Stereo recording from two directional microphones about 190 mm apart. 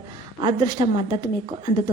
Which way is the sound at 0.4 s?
25° right (ahead or behind).